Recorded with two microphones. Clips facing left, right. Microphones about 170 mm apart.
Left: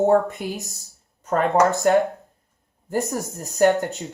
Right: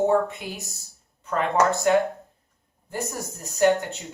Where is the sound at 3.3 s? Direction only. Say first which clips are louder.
Left 2 dB; 40° left (ahead or behind).